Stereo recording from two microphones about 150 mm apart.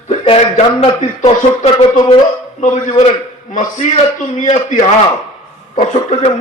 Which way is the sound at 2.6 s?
50° left (ahead or behind).